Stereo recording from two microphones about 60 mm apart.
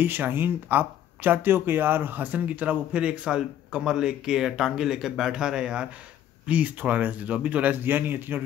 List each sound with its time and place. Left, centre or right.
0.0 s speech: right; by 5.9 s centre
6.4 s speech: right
7.8 s a man's voice: right